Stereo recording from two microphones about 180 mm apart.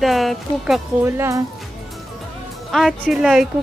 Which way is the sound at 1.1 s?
15° right (ahead or behind).